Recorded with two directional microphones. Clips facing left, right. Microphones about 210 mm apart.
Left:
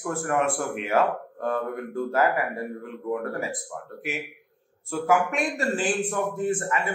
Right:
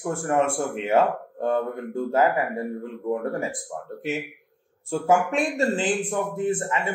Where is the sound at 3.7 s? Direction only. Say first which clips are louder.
Right 4 dB; 25° right (ahead or behind).